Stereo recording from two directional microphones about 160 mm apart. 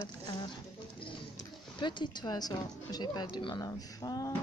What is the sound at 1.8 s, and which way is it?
Speech, 30° left (ahead or behind).